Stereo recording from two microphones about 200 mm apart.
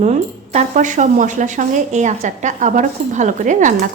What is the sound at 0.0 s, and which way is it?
Speech, 35° right (ahead or behind).